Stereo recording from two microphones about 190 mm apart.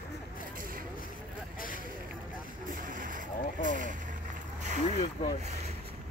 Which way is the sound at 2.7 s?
45° right (ahead or behind).